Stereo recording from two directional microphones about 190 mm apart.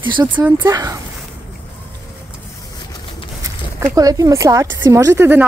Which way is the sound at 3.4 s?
20° right (ahead or behind).